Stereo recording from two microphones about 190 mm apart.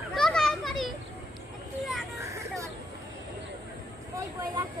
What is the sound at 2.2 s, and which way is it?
Vehicle, 15° right (ahead or behind).